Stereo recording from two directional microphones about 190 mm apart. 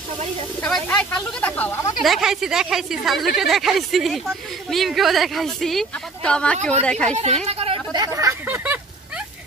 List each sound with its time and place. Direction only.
0.6 s speech: 5° left (ahead or behind)
2.0 s a woman's voice: centre (ahead or behind)
7.4 s a sound: 30° right (ahead or behind); by 8.7 s 15° right (ahead or behind)